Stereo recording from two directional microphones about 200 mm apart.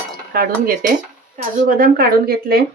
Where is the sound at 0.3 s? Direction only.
45° right (ahead or behind).